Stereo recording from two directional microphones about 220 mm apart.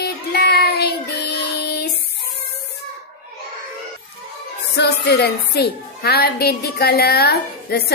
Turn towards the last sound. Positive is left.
turn(degrees=45)  # may be behind; listen again after turning